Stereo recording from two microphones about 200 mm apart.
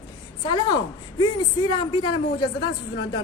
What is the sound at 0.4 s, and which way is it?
Speech, 20° left (ahead or behind).